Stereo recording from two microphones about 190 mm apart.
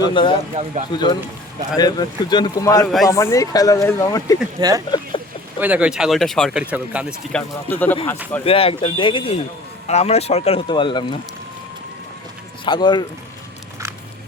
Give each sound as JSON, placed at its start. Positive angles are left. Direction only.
{"t": 0.0, "sound": "speech", "side_deg": 25}
{"t": 0.6, "sound": "speech", "side_deg": -40}
{"t": 0.9, "sound": "speech", "side_deg": 20}
{"t": 2.8, "sound": "speech", "side_deg": 0}
{"t": 3.1, "sound": "speech", "side_deg": 15}
{"t": 4.6, "sound": "speech", "side_deg": -25}
{"t": 5.1, "sound": "a sound", "side_deg": 25}
{"t": 5.5, "sound": "speech", "side_deg": -10}
{"t": 7.7, "sound": "speech", "side_deg": 10}
{"t": 8.4, "sound": "speech", "side_deg": 30}
{"t": 12.6, "sound": "speech", "side_deg": 25}